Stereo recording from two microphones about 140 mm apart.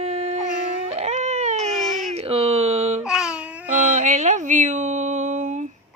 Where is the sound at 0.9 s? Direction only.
50° right (ahead or behind).